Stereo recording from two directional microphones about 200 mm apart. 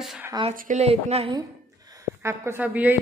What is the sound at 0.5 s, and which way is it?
Speech, 40° right (ahead or behind).